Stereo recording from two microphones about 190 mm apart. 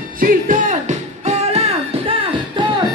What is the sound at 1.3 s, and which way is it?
Music, 35° right (ahead or behind).